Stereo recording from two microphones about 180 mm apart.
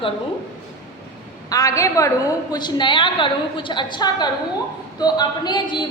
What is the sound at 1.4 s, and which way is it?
A woman's voice, 20° left (ahead or behind).